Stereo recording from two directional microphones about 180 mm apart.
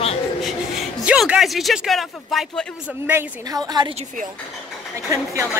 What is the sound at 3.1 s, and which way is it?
Speech, 15° right (ahead or behind).